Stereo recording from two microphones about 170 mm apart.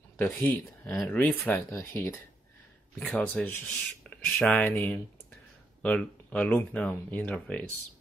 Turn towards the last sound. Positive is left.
turn(degrees=10)  # may be behind; listen again after turning